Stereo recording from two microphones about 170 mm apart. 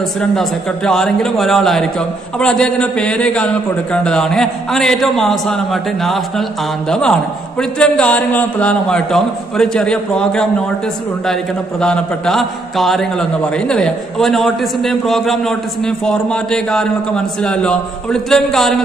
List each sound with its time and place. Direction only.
0.2 s a man's voice: 5° left (ahead or behind)
11.8 s a man's voice: 5° left (ahead or behind)